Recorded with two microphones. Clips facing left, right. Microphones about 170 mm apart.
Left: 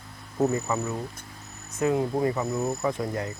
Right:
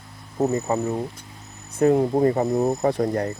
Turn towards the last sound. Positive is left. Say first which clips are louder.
# right 6 dB
turn(degrees=-35)  # may be behind; listen again after turning